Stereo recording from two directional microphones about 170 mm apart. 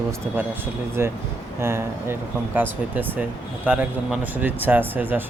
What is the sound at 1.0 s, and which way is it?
Speech, 15° right (ahead or behind).